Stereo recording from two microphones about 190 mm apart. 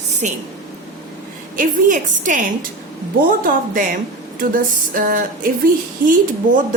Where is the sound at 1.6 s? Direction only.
45° right (ahead or behind).